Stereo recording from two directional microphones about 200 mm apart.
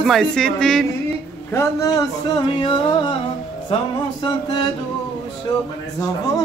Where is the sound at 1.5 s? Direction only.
15° left (ahead or behind).